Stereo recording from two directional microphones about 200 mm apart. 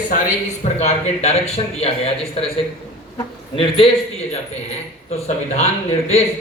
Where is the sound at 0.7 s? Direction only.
35° left (ahead or behind).